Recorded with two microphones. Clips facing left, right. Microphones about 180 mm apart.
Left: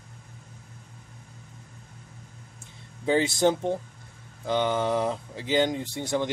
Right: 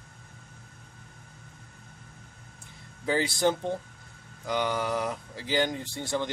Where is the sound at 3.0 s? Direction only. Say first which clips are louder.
Left 3 dB; 20° left (ahead or behind).